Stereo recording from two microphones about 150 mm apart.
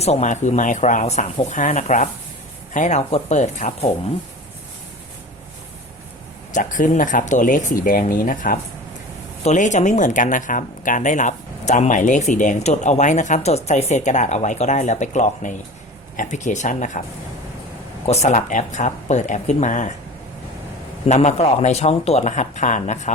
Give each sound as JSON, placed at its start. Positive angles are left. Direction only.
{"t": 0.0, "sound": "speech", "side_deg": 50}
{"t": 6.5, "sound": "speech", "side_deg": 60}
{"t": 9.4, "sound": "speech", "side_deg": 50}
{"t": 18.0, "sound": "speech", "side_deg": 45}
{"t": 21.1, "sound": "speech", "side_deg": 50}